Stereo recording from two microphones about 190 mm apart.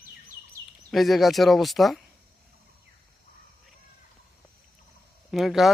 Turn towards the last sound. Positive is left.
turn(degrees=0)  # may be behind; listen again after turning